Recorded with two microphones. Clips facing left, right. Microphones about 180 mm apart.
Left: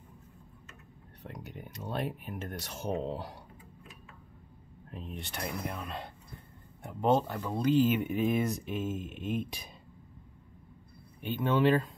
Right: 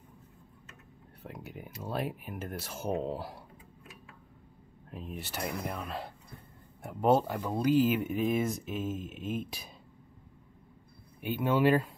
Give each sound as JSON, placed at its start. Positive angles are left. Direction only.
{"t": 1.2, "sound": "speech", "side_deg": -5}
{"t": 4.9, "sound": "speech", "side_deg": -5}
{"t": 11.1, "sound": "speech", "side_deg": -10}